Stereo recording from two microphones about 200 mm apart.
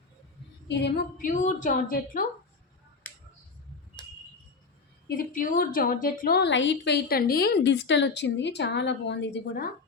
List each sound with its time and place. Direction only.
0.7 s a woman's voice: 55° left (ahead or behind); by 2.2 s 40° left (ahead or behind)
5.0 s a woman's voice: 45° left (ahead or behind)